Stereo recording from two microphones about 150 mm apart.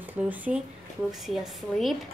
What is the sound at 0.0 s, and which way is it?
Speech, 10° right (ahead or behind).